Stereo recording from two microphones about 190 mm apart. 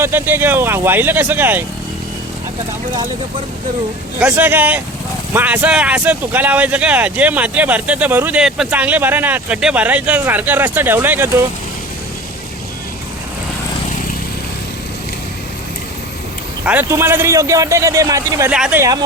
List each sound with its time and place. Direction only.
0.0 s speech: 10° right (ahead or behind)
4.2 s speech: 5° right (ahead or behind)
16.6 s speech: 10° right (ahead or behind)
18.5 s speech: 5° right (ahead or behind)